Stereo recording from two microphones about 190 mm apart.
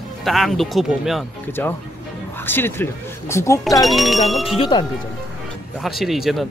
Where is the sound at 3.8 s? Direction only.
Centre (ahead or behind).